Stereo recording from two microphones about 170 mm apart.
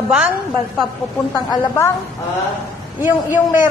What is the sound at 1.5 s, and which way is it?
Speech, 15° left (ahead or behind).